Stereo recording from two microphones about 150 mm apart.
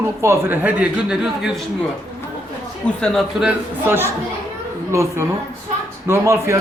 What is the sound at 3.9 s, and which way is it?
A man's voice, 15° right (ahead or behind).